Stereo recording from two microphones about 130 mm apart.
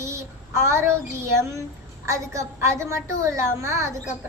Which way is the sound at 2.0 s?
25° right (ahead or behind).